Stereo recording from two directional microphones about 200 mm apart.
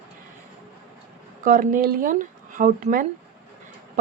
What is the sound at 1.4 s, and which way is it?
Speech, 40° right (ahead or behind).